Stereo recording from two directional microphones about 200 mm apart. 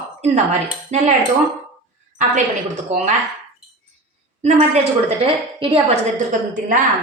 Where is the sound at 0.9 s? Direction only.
35° right (ahead or behind).